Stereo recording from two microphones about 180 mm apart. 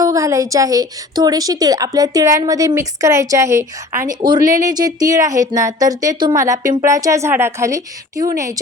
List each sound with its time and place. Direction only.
0.0 s a woman's voice: 15° right (ahead or behind)